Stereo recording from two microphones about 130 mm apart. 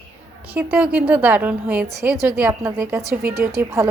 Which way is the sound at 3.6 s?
20° right (ahead or behind).